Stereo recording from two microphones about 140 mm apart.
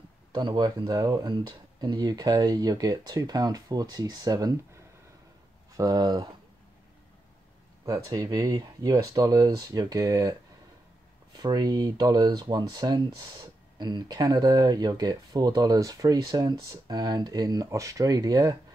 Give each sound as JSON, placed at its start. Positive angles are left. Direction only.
{"t": 0.3, "sound": "speech", "side_deg": -35}
{"t": 5.8, "sound": "speech", "side_deg": -30}
{"t": 7.8, "sound": "speech", "side_deg": -25}
{"t": 11.3, "sound": "speech", "side_deg": -30}